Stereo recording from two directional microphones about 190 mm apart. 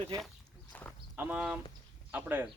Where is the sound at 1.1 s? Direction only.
10° right (ahead or behind).